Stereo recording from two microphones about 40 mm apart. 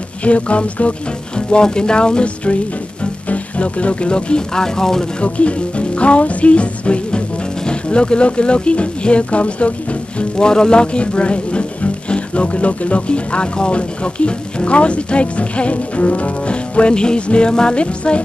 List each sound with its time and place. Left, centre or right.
0.2 s music: left
1.5 s speech: left
5.2 s music: left
7.6 s speech: left
10.3 s speech: centre